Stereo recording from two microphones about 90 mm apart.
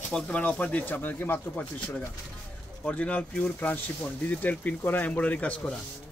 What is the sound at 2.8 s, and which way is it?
Speech, 15° left (ahead or behind).